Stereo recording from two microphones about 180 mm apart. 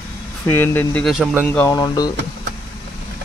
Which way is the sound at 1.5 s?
15° left (ahead or behind).